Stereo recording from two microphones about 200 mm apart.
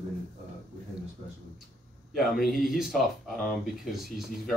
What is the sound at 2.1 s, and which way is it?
Speech, centre (ahead or behind).